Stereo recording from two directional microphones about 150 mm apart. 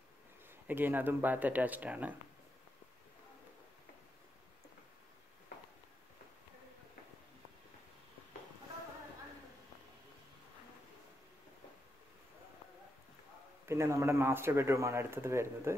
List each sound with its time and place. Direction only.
0.7 s speech: 15° right (ahead or behind)
13.7 s speech: 20° right (ahead or behind)